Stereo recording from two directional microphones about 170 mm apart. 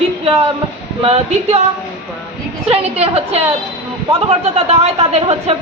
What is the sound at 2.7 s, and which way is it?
A woman's voice, 35° right (ahead or behind).